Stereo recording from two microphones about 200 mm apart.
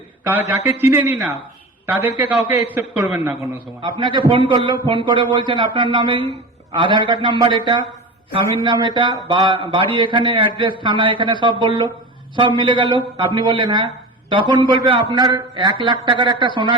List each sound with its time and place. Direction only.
0.3 s a man's voice: 10° right (ahead or behind)
3.8 s a man's voice: 25° right (ahead or behind)